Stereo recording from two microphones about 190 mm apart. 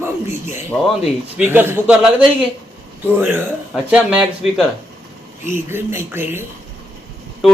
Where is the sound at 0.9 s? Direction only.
10° right (ahead or behind).